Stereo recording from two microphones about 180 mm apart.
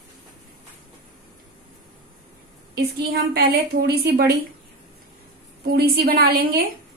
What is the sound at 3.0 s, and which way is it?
A woman's voice, 60° right (ahead or behind).